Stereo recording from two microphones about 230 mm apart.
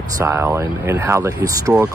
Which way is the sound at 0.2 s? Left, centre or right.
Centre.